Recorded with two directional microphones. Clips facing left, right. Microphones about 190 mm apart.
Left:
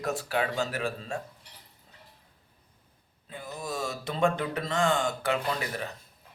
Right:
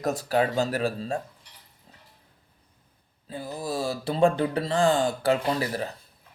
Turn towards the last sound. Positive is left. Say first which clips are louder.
# right 5 dB
turn(degrees=-35)  # may be behind; listen again after turning